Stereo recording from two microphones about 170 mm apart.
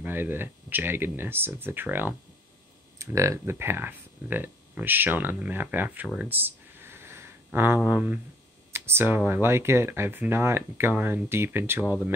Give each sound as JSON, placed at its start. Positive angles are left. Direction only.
{"t": 0.0, "sound": "speech", "side_deg": -10}